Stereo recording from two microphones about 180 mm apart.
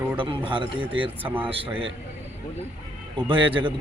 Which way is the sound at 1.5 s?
30° right (ahead or behind).